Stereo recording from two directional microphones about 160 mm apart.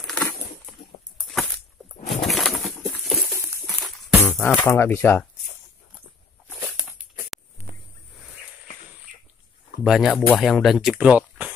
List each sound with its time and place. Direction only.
0.0 s crumpling: 10° left (ahead or behind)
1.2 s a sound: centre (ahead or behind)
2.2 s bird: centre (ahead or behind)
2.8 s a sound: centre (ahead or behind)
3.8 s music: centre (ahead or behind)
4.3 s speech: centre (ahead or behind)
4.6 s speech: 15° left (ahead or behind)
7.3 s a sound: centre (ahead or behind)
9.8 s speech: centre (ahead or behind)